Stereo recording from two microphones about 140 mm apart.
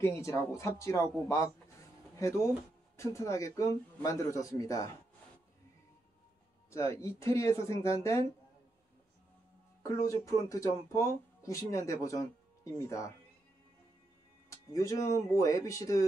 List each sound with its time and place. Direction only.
0.0 s speech: 20° left (ahead or behind)
6.7 s speech: 20° left (ahead or behind)
9.8 s speech: 20° left (ahead or behind)
14.7 s speech: 25° left (ahead or behind)